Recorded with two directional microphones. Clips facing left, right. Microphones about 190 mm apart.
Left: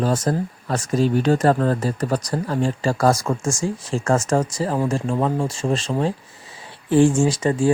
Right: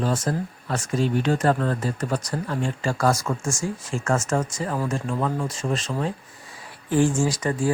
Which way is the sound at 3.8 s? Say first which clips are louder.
Left 4 dB; 35° left (ahead or behind).